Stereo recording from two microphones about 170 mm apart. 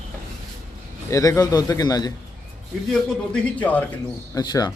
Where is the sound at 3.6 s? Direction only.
10° left (ahead or behind).